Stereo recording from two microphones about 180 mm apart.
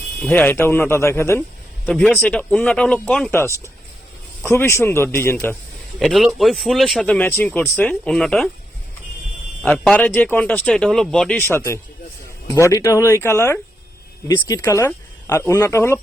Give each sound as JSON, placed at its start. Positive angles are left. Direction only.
{"t": 0.2, "sound": "speech", "side_deg": 10}
{"t": 6.0, "sound": "speech", "side_deg": 0}
{"t": 9.6, "sound": "speech", "side_deg": 5}